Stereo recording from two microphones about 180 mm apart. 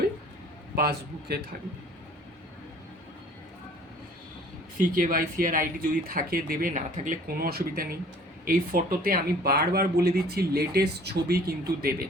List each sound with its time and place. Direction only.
4.8 s speech: 50° right (ahead or behind)